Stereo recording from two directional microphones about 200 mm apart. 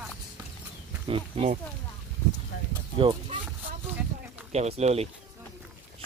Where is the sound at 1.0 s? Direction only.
30° right (ahead or behind).